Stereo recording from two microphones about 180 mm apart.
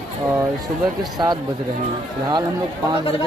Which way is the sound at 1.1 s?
20° right (ahead or behind).